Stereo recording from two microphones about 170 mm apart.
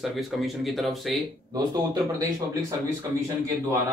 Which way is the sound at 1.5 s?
25° right (ahead or behind).